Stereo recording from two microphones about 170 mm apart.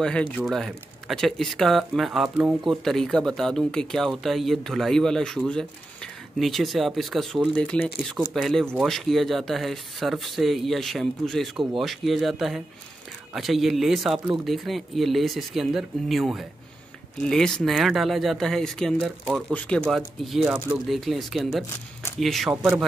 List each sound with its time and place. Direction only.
0.0 s speech: 5° left (ahead or behind)